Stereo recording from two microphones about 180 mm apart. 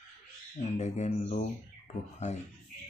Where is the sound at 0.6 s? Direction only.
40° left (ahead or behind).